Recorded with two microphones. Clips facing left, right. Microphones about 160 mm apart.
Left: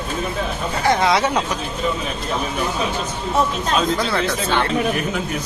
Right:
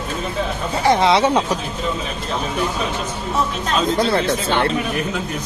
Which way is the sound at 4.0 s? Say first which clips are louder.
Right 3 dB; 25° right (ahead or behind).